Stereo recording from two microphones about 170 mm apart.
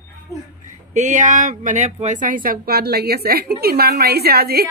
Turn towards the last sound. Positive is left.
turn(degrees=-65)  # may be behind; listen again after turning